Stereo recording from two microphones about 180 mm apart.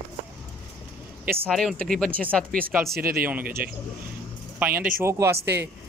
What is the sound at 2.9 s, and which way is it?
Speech, 55° right (ahead or behind).